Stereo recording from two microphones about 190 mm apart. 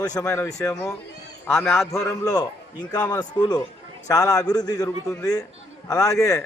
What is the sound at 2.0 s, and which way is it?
A man's voice, 20° left (ahead or behind).